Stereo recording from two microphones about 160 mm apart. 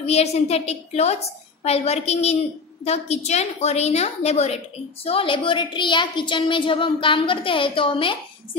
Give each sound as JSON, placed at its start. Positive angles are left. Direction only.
{"t": 0.0, "sound": "a woman's voice", "side_deg": 40}